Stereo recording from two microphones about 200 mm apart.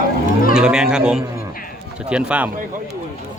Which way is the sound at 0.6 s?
5° right (ahead or behind).